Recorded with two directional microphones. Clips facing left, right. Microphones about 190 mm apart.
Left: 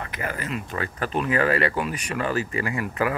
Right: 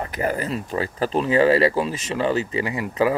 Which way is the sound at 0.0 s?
35° right (ahead or behind).